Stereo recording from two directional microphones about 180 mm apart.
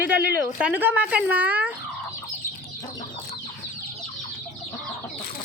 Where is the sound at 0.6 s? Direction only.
10° right (ahead or behind).